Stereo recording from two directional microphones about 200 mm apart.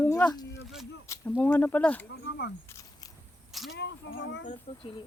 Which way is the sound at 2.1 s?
60° left (ahead or behind).